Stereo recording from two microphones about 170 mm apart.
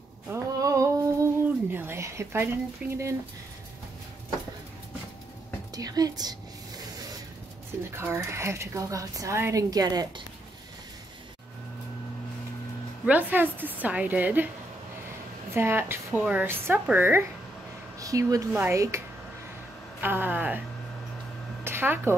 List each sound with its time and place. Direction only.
0.3 s a sound: 20° right (ahead or behind)
1.7 s speech: 15° right (ahead or behind)
5.8 s a woman's voice: 20° right (ahead or behind)
7.9 s speech: 15° right (ahead or behind)
13.0 s speech: 10° right (ahead or behind)
15.5 s speech: 15° right (ahead or behind)
21.6 s a sound: 15° right (ahead or behind)